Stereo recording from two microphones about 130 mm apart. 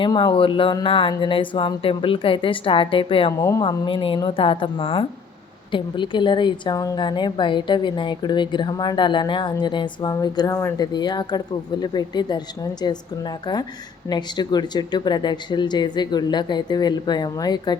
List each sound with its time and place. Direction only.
0.0 s a woman's voice: 35° left (ahead or behind)
3.4 s a woman's voice: 30° left (ahead or behind)
10.9 s a woman's voice: 35° left (ahead or behind)